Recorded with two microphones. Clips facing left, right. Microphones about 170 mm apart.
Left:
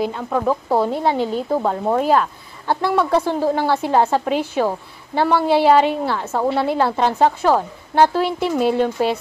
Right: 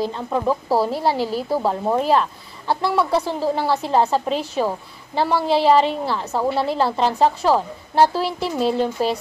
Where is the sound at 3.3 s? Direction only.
55° left (ahead or behind).